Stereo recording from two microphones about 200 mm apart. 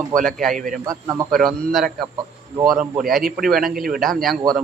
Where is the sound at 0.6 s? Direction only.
40° right (ahead or behind).